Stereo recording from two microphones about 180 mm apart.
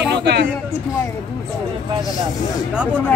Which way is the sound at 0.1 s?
70° right (ahead or behind).